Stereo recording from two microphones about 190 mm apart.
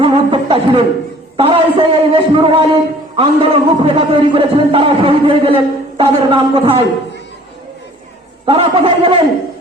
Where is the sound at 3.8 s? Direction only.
25° right (ahead or behind).